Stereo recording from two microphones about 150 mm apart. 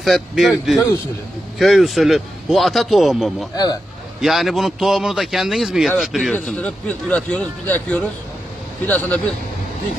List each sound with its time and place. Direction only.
0.0 s a man's voice: centre (ahead or behind)
6.3 s speech: 10° left (ahead or behind)